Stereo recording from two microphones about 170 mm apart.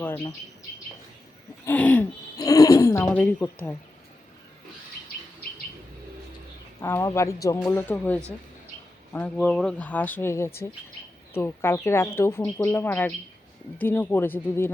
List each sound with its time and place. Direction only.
1.6 s speech: 10° left (ahead or behind)
2.4 s speech: 20° left (ahead or behind)
6.8 s speech: 15° left (ahead or behind)